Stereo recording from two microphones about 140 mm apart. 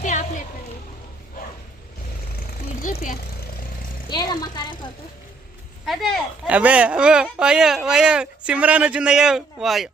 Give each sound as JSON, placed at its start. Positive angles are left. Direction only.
{"t": 0.0, "sound": "a sound", "side_deg": 60}
{"t": 4.1, "sound": "a woman's voice", "side_deg": 30}
{"t": 5.8, "sound": "speech", "side_deg": 0}
{"t": 6.5, "sound": "speech", "side_deg": -10}